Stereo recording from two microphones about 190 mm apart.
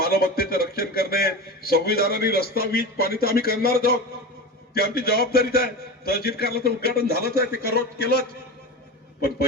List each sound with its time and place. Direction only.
0.0 s a man's voice: 50° left (ahead or behind)